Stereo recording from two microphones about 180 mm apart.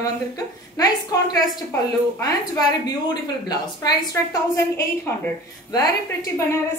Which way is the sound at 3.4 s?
20° left (ahead or behind).